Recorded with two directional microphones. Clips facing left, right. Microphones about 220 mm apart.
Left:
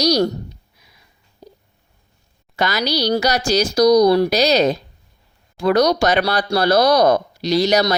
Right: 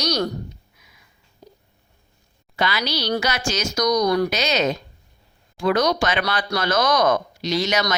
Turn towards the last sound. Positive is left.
turn(degrees=35)  # may be behind; listen again after turning